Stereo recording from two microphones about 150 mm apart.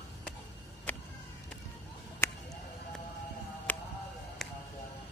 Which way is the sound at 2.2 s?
20° left (ahead or behind).